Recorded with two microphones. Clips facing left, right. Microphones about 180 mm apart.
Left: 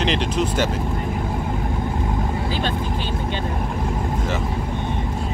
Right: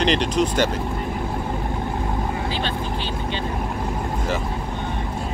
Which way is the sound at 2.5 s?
45° left (ahead or behind).